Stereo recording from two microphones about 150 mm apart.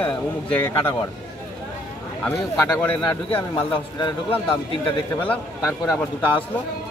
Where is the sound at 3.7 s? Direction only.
35° left (ahead or behind).